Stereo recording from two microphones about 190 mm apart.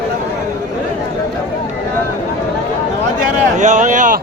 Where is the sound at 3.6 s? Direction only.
40° right (ahead or behind).